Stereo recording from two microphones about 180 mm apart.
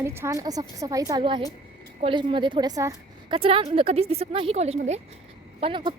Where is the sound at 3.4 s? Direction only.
30° right (ahead or behind).